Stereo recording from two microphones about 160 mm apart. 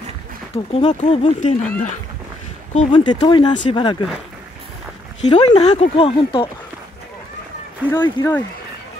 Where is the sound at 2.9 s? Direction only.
30° left (ahead or behind).